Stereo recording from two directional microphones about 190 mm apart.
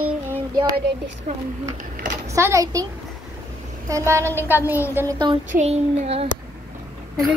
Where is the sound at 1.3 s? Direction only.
40° right (ahead or behind).